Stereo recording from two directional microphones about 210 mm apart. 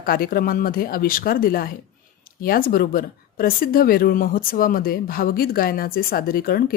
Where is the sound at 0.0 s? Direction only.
45° left (ahead or behind).